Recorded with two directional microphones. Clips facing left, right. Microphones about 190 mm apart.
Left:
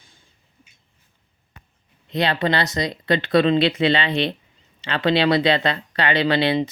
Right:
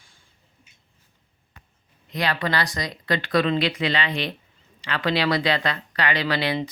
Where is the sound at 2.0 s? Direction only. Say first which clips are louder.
Left 5 dB; 25° left (ahead or behind).